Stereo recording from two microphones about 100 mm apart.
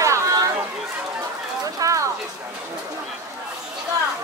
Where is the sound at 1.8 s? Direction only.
35° right (ahead or behind).